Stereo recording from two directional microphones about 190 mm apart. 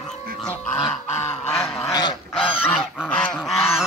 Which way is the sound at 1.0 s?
35° left (ahead or behind).